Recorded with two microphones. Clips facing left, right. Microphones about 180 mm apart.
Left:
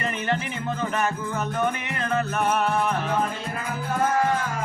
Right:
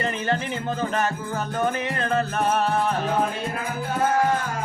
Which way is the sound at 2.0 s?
30° right (ahead or behind).